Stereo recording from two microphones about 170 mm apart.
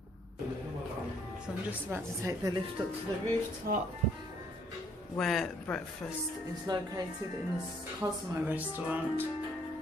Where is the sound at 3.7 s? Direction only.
60° right (ahead or behind).